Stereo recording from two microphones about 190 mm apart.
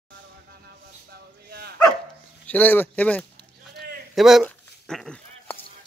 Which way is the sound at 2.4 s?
10° left (ahead or behind).